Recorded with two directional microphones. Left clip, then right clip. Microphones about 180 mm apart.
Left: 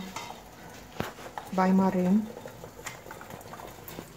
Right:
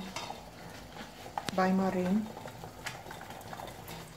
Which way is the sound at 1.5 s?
45° left (ahead or behind).